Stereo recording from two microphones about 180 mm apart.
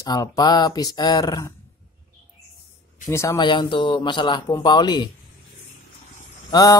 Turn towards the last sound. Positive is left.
turn(degrees=20)  # may be behind; listen again after turning